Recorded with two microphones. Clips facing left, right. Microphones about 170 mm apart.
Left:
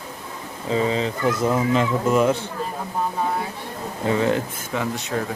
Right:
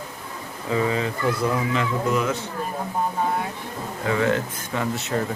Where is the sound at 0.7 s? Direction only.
25° left (ahead or behind).